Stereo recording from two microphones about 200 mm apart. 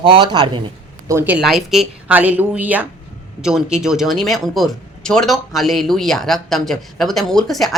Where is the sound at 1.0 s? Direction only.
10° right (ahead or behind).